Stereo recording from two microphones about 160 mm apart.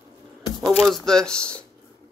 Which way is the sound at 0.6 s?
Centre (ahead or behind).